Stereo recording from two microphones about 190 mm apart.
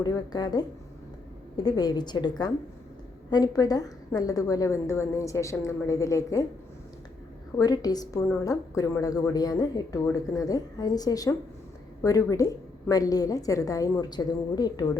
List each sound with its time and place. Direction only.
0.0 s a woman's voice: 20° left (ahead or behind)
7.6 s speech: 20° left (ahead or behind)